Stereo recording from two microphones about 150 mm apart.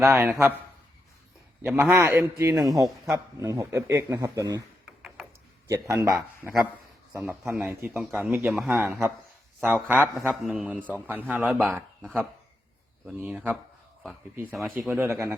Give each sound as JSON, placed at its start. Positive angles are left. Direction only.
{"t": 0.2, "sound": "speech", "side_deg": -15}
{"t": 1.6, "sound": "a man's voice", "side_deg": -10}
{"t": 5.6, "sound": "a man's voice", "side_deg": -20}
{"t": 10.2, "sound": "a man's voice", "side_deg": 0}
{"t": 14.5, "sound": "speech", "side_deg": -5}